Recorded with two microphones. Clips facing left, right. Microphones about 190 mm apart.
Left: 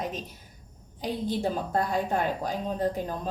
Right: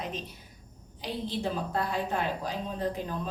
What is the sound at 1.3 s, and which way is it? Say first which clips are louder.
A woman's voice: left 4 dB; 45° left (ahead or behind).